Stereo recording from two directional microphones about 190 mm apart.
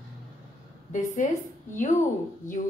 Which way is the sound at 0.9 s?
40° left (ahead or behind).